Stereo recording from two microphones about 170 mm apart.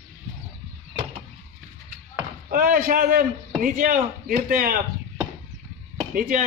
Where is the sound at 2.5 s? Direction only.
55° right (ahead or behind).